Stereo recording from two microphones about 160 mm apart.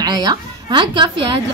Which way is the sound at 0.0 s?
25° right (ahead or behind).